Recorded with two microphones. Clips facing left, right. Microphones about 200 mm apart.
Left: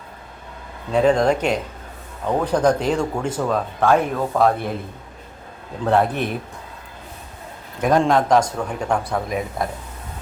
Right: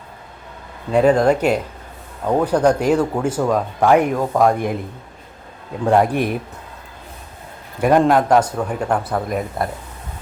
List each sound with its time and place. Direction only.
0.9 s speech: 5° right (ahead or behind)
5.8 s speech: 15° right (ahead or behind)
7.8 s a man's voice: 5° right (ahead or behind)